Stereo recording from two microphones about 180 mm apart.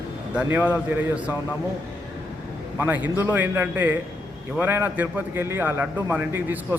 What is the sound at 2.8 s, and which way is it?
A man's voice, 10° right (ahead or behind).